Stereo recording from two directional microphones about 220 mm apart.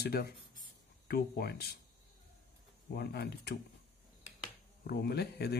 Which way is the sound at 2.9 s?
45° left (ahead or behind).